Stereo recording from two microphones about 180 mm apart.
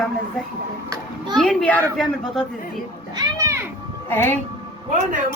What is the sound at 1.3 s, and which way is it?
Speech, centre (ahead or behind).